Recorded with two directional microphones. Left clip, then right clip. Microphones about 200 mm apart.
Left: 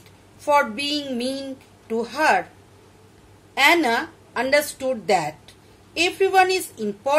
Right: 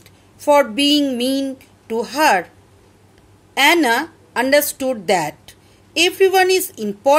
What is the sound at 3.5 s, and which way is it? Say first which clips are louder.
A woman's voice: right 3 dB; 50° right (ahead or behind).